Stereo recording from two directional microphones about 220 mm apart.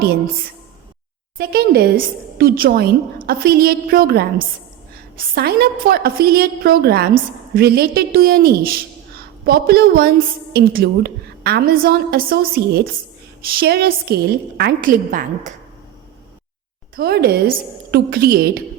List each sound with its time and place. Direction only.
1.4 s a woman's voice: 45° right (ahead or behind)
16.9 s a woman's voice: 45° right (ahead or behind)